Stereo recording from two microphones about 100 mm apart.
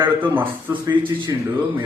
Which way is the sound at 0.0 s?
20° right (ahead or behind).